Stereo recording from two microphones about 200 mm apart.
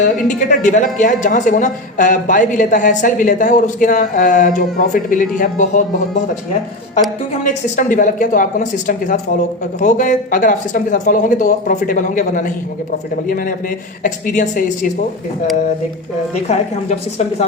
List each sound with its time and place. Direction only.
0.6 s a woman's voice: 40° left (ahead or behind)
7.4 s a woman's voice: 40° left (ahead or behind)
16.5 s a woman's voice: 35° left (ahead or behind)